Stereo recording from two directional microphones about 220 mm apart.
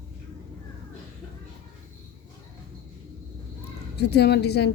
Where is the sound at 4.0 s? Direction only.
50° left (ahead or behind).